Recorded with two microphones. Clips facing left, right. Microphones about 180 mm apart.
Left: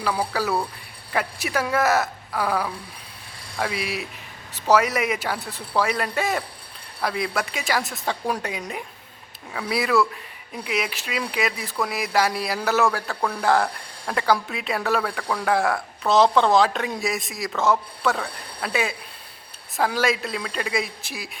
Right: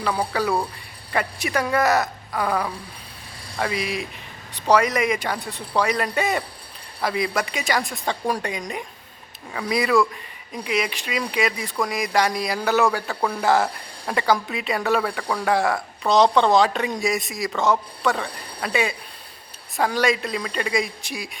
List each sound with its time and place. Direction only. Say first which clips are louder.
0.0 s speech: right 1 dB; 5° left (ahead or behind)